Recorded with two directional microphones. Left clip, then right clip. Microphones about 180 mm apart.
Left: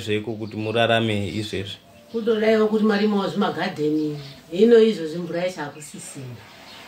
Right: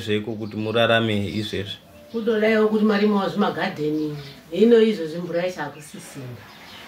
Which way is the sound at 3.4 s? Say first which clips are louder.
Even; 20° left (ahead or behind).